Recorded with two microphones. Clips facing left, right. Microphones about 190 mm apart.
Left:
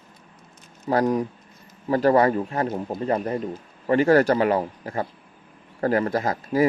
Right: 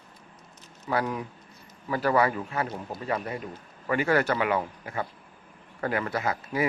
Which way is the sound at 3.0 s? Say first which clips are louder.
Left 6 dB; 35° left (ahead or behind).